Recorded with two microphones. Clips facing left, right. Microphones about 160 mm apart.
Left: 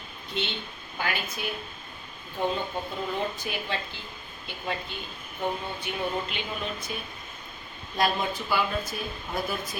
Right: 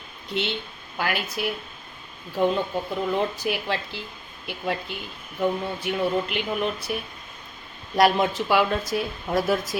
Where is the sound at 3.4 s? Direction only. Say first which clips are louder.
Right 6 dB; 80° right.